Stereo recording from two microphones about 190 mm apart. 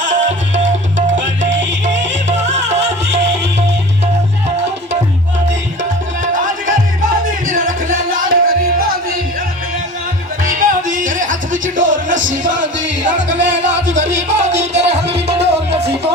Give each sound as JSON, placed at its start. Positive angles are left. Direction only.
{"t": 0.0, "sound": "music", "side_deg": -40}
{"t": 6.7, "sound": "music", "side_deg": -45}
{"t": 10.4, "sound": "music", "side_deg": -45}
{"t": 13.2, "sound": "music", "side_deg": -70}
{"t": 14.0, "sound": "music", "side_deg": -35}
{"t": 15.0, "sound": "music", "side_deg": -60}